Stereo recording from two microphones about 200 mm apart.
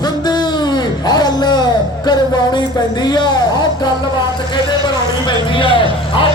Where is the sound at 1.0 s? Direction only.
20° left (ahead or behind).